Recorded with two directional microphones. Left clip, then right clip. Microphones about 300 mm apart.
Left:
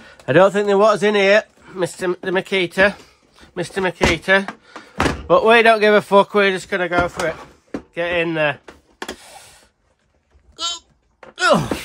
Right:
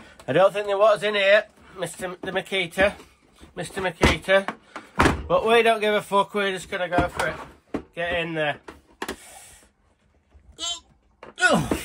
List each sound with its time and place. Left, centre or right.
0.3 s speech: left
4.5 s door: centre
5.3 s speech: left
7.2 s a sound: centre
7.9 s speech: left
10.5 s a sound: left
11.3 s wail: left